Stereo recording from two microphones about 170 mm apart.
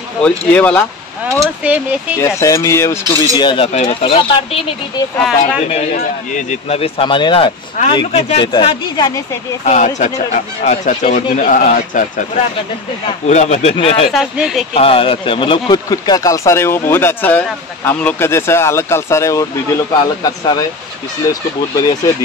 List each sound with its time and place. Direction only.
0.2 s speech: 10° left (ahead or behind)
1.4 s speech: 5° right (ahead or behind)
2.2 s speech: 20° left (ahead or behind)
5.7 s speech: 40° left (ahead or behind)
9.7 s speech: 45° left (ahead or behind)
14.1 s speech: 5° right (ahead or behind)
14.7 s speech: 35° left (ahead or behind)